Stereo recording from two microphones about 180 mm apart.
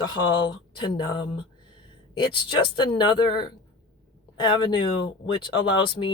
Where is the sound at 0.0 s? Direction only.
25° left (ahead or behind).